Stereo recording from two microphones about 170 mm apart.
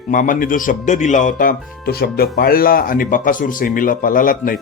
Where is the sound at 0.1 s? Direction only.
50° left (ahead or behind).